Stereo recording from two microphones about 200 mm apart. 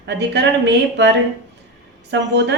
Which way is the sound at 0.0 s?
60° right (ahead or behind).